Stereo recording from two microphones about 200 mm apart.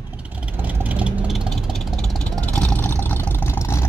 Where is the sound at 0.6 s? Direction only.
5° right (ahead or behind).